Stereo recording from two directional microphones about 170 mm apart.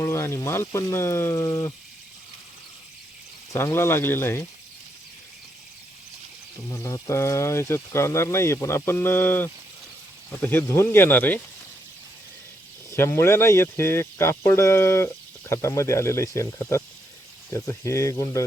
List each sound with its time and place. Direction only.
0.0 s speech: 15° left (ahead or behind)
3.5 s speech: 15° left (ahead or behind)
6.7 s speech: 20° left (ahead or behind)
12.9 s speech: 15° left (ahead or behind)